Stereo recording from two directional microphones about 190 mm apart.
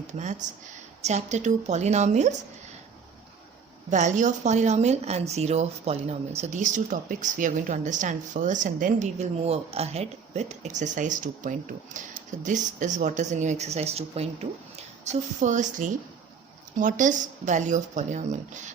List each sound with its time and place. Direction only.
0.1 s a woman's voice: 40° right (ahead or behind)
3.8 s a woman's voice: 40° right (ahead or behind)